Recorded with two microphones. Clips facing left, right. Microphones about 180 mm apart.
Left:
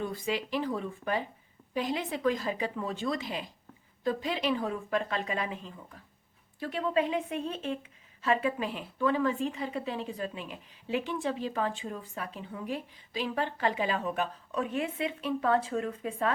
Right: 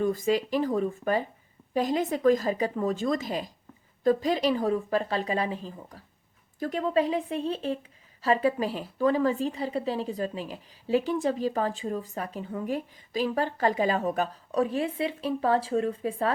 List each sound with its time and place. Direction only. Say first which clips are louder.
0.0 s a woman's voice: right 8 dB; 45° right (ahead or behind)